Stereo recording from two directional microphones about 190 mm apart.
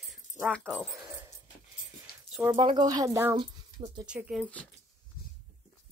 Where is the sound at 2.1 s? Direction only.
55° left (ahead or behind).